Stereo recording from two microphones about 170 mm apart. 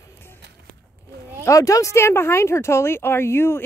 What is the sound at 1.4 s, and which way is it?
Speech, 20° left (ahead or behind).